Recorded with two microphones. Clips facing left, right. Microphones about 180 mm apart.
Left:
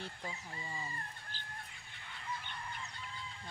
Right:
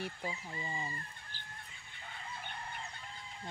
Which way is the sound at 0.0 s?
15° right (ahead or behind).